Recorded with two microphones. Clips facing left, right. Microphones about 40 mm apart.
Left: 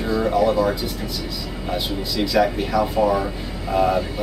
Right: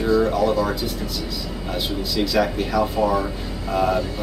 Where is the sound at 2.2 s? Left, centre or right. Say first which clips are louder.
Left 2 dB; centre.